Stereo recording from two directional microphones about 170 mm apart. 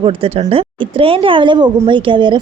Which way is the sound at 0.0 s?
35° right (ahead or behind).